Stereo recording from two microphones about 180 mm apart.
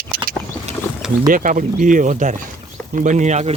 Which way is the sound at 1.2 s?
45° right (ahead or behind).